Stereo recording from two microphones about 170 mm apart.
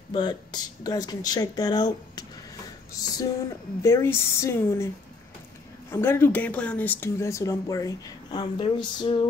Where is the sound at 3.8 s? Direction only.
15° left (ahead or behind).